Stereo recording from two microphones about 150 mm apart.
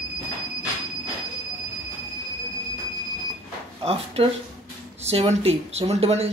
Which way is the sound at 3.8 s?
40° right (ahead or behind).